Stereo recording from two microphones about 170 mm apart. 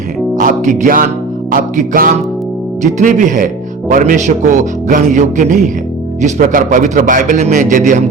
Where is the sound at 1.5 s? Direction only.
55° right (ahead or behind).